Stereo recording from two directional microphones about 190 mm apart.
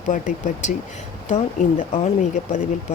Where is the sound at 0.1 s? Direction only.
40° left (ahead or behind).